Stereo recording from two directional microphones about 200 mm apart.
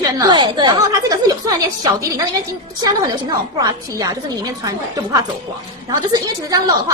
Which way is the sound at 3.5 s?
20° right (ahead or behind).